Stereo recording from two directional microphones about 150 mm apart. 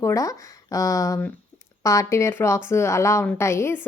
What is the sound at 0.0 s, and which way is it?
Speech, 20° left (ahead or behind).